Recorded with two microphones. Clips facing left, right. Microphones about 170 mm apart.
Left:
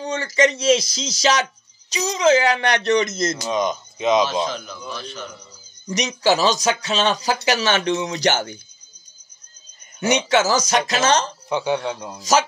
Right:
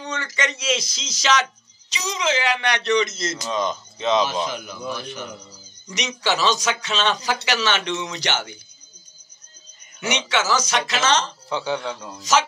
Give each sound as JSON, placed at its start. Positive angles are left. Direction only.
{"t": 0.0, "sound": "speech", "side_deg": 35}
{"t": 3.4, "sound": "speech", "side_deg": 15}
{"t": 4.5, "sound": "a man's voice", "side_deg": -15}
{"t": 5.9, "sound": "speech", "side_deg": 40}
{"t": 9.9, "sound": "speech", "side_deg": 40}
{"t": 11.4, "sound": "speech", "side_deg": 15}
{"t": 12.2, "sound": "speech", "side_deg": 40}